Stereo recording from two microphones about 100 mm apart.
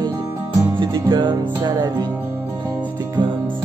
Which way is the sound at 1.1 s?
50° right (ahead or behind).